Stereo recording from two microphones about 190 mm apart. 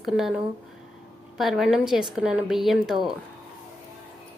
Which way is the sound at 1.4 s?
Centre (ahead or behind).